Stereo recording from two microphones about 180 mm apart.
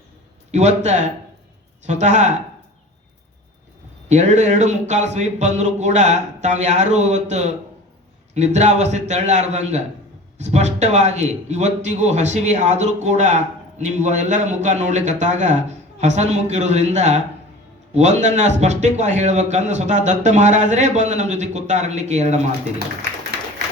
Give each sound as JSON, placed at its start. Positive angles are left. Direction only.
{"t": 0.5, "sound": "a man's voice", "side_deg": -40}
{"t": 4.1, "sound": "a man's voice", "side_deg": -40}